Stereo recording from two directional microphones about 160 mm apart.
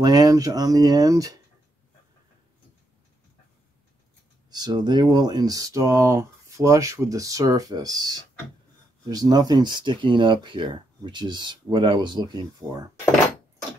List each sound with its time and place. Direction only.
0.0 s speech: 25° right (ahead or behind)
4.5 s speech: 25° right (ahead or behind)